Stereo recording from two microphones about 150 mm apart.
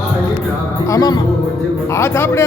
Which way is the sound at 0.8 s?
25° left (ahead or behind).